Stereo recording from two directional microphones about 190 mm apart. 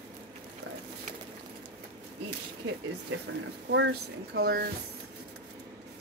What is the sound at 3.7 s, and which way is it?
Speech, 65° right (ahead or behind).